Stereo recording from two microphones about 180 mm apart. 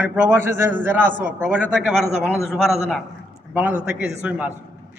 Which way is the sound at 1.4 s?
5° right (ahead or behind).